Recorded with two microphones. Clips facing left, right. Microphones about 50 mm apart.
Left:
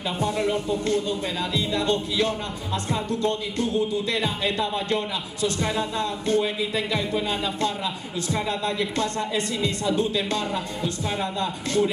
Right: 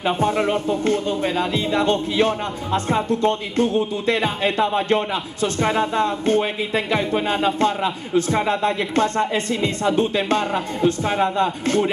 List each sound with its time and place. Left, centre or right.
0.0 s speech: right